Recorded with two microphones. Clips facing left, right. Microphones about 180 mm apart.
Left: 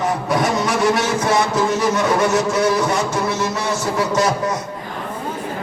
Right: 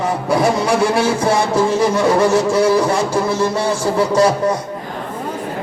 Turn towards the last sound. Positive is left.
turn(degrees=-30)  # may be behind; listen again after turning